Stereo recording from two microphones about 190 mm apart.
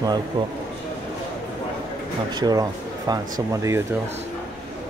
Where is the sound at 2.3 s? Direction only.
20° right (ahead or behind).